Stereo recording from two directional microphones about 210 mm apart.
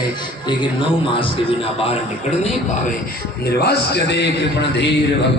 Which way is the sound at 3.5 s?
50° left (ahead or behind).